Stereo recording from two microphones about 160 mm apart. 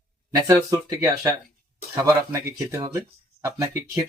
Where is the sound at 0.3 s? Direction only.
20° right (ahead or behind).